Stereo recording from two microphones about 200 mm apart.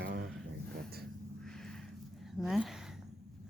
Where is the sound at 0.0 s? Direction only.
60° right (ahead or behind).